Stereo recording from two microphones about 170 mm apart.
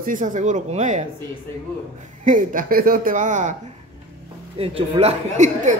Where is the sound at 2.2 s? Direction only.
50° right (ahead or behind).